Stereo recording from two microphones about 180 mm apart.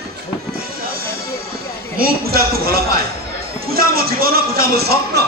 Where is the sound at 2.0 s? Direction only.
55° right (ahead or behind).